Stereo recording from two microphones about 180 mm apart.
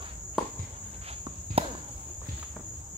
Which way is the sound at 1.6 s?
30° right (ahead or behind).